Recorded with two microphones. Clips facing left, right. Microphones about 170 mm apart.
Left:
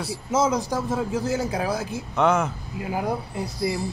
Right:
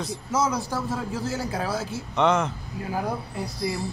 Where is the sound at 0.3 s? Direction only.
25° left (ahead or behind); by 3.0 s 5° left (ahead or behind).